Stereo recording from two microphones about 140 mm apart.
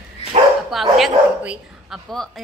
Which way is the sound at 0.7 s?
Centre (ahead or behind).